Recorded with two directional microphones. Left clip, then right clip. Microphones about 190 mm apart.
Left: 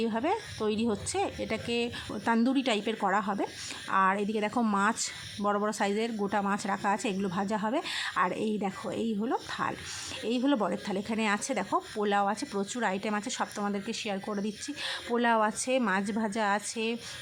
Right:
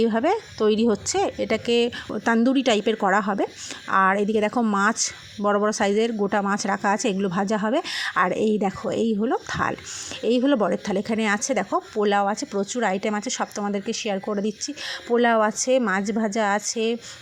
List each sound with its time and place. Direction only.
0.0 s a woman's voice: 30° right (ahead or behind)